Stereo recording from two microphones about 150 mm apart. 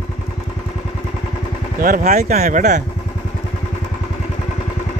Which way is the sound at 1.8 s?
65° right (ahead or behind).